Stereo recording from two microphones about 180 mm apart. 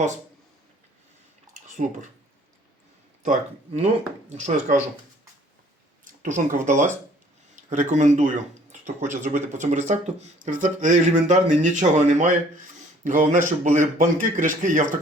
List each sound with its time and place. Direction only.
1.7 s speech: 45° right (ahead or behind)
3.2 s speech: 40° right (ahead or behind)
6.1 s speech: 45° right (ahead or behind)